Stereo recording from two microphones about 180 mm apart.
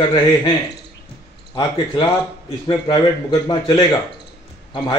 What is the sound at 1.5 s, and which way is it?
A man's voice, 25° left (ahead or behind).